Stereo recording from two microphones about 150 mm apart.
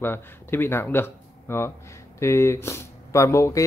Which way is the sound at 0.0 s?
15° left (ahead or behind).